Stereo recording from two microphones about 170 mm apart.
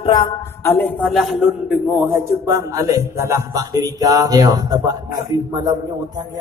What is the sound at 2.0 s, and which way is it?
A man's voice, 20° right (ahead or behind).